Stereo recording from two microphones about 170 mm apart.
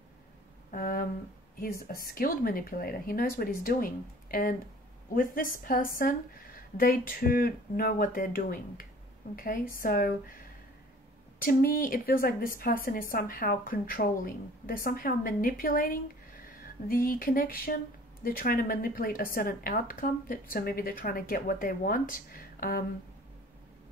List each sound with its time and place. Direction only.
0.7 s a sound: 55° left (ahead or behind)
2.0 s a woman's voice: 60° left (ahead or behind)
11.4 s a woman's voice: 55° left (ahead or behind)